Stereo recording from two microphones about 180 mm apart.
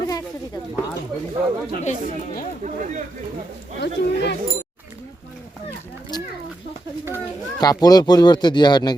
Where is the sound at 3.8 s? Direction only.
70° left (ahead or behind).